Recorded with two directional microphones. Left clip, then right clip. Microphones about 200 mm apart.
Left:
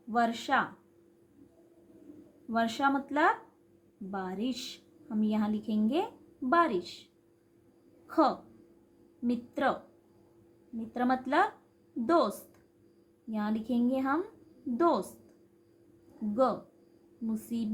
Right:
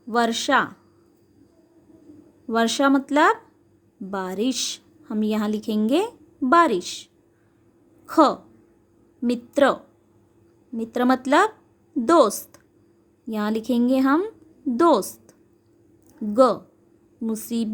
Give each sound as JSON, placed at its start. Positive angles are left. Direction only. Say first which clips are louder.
{"t": 0.1, "sound": "a woman's voice", "louder": "right 8 dB", "side_deg": -50}
{"t": 2.5, "sound": "a woman's voice", "louder": "right 9 dB", "side_deg": -55}
{"t": 10.8, "sound": "a woman's voice", "louder": "right 9 dB", "side_deg": -55}
{"t": 16.3, "sound": "speech", "louder": "right 11 dB", "side_deg": -55}